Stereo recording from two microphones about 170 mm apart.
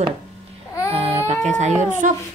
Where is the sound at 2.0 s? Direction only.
50° right (ahead or behind).